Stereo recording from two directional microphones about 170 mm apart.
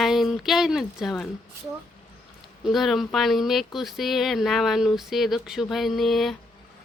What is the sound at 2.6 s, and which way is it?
Speech, centre (ahead or behind).